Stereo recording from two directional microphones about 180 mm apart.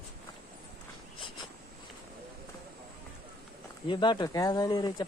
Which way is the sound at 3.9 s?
25° left (ahead or behind).